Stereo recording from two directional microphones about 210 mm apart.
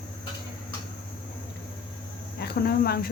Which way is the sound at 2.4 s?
50° left (ahead or behind).